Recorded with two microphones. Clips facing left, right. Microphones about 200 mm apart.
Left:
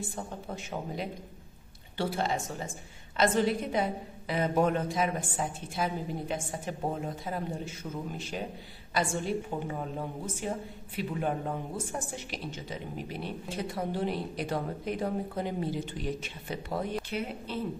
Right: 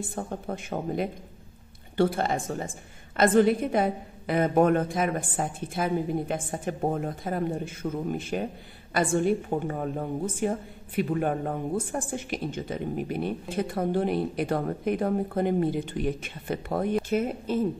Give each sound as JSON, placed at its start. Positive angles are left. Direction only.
{"t": 0.1, "sound": "a woman's voice", "side_deg": -55}